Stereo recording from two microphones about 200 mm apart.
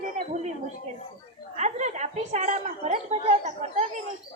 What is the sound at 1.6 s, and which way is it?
A woman's voice, 35° right (ahead or behind).